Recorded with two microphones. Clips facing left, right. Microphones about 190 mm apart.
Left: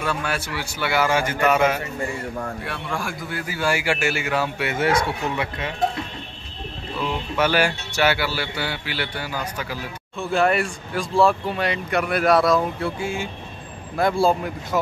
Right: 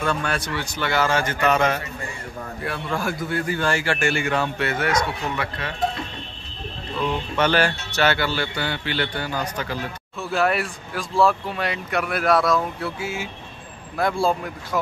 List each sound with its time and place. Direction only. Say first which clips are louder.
0.0 s speech: right 1 dB; 5° left (ahead or behind)
4.7 s speech: left 5 dB; 25° left (ahead or behind)
7.0 s speech: even; 10° left (ahead or behind)
10.3 s speech: left 2 dB; centre (ahead or behind)